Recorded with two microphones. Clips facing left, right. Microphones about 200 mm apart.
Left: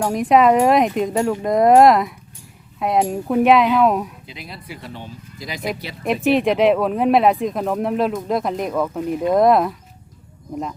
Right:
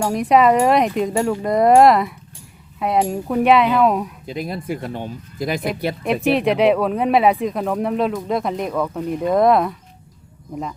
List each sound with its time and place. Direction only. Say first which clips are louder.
0.0 s speech: even; centre (ahead or behind)
4.3 s speech: right 11 dB; 50° right (ahead or behind)
6.1 s speech: left 1 dB; centre (ahead or behind)